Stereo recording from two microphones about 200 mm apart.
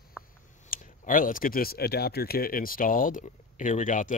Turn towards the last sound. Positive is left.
turn(degrees=40)  # may be behind; listen again after turning